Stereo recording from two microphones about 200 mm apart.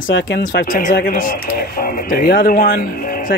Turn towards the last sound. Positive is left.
turn(degrees=45)  # may be behind; listen again after turning